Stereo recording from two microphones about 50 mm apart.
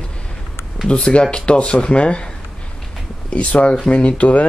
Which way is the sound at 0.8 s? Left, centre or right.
Left.